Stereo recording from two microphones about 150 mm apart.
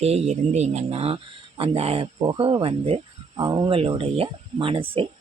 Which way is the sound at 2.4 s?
40° right (ahead or behind).